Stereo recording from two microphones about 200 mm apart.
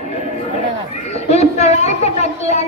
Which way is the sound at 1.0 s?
35° left (ahead or behind).